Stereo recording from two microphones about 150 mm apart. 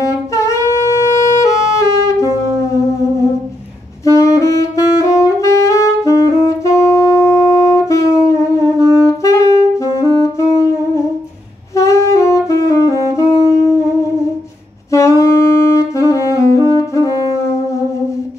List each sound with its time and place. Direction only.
0.0 s saxophone: 20° left (ahead or behind)
4.0 s saxophone: 20° left (ahead or behind)
11.7 s saxophone: 20° left (ahead or behind)
14.9 s saxophone: 20° left (ahead or behind)